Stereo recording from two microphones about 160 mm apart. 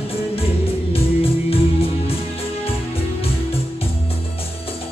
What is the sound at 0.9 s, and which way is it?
Music, 35° left (ahead or behind).